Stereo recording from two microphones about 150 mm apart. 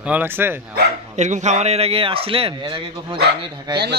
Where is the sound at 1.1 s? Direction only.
50° right (ahead or behind); by 3.2 s 35° right (ahead or behind).